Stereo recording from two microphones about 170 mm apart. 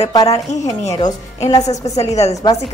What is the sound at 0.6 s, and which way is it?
Speech, 20° left (ahead or behind).